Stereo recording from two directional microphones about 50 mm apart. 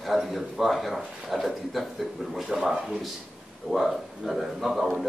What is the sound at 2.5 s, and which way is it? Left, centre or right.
Speech, centre.